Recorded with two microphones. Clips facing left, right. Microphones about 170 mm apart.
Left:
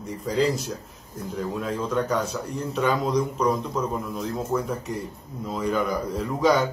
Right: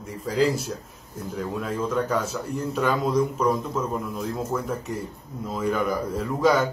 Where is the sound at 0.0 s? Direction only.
5° right (ahead or behind).